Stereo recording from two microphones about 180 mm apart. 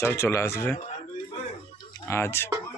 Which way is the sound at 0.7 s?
40° left (ahead or behind).